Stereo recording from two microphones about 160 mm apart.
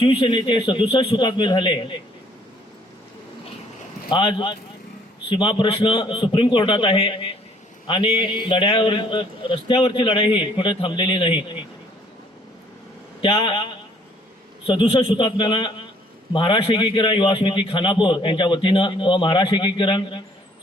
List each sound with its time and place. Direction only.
0.0 s a man's voice: 35° left (ahead or behind)
4.1 s a man's voice: 30° left (ahead or behind)
13.2 s a man's voice: 35° left (ahead or behind)